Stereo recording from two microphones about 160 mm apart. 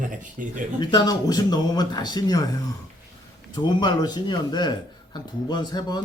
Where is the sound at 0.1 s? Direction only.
55° right (ahead or behind).